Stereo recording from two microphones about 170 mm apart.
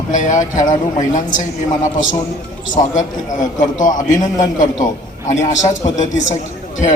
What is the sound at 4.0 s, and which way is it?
Speech, 50° left (ahead or behind).